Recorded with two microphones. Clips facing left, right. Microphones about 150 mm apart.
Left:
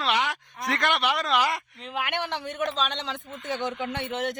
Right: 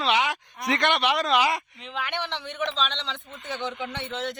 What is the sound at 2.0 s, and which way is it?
Speech, 45° left (ahead or behind).